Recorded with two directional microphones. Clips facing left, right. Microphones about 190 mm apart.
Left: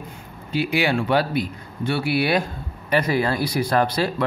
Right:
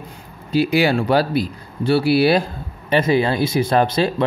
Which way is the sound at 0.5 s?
35° right (ahead or behind).